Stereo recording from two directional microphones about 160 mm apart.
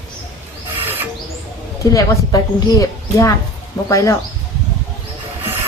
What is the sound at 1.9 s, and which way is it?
A woman's voice, 20° left (ahead or behind).